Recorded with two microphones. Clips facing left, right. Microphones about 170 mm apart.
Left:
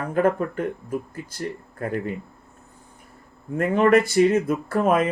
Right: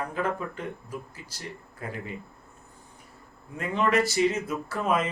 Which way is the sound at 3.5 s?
50° left (ahead or behind).